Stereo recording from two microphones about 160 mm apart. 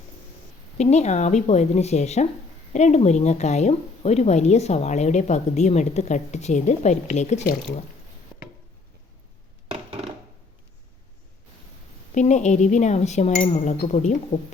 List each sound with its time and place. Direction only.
0.8 s speech: 45° left (ahead or behind)
12.1 s speech: 45° left (ahead or behind)